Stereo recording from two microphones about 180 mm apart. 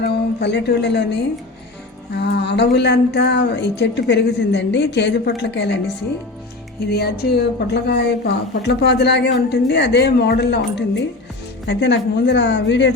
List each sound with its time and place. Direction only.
0.0 s a woman's voice: 70° left (ahead or behind)